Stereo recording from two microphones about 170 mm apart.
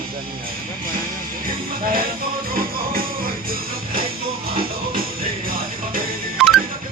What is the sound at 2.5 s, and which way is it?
Music, 60° right (ahead or behind).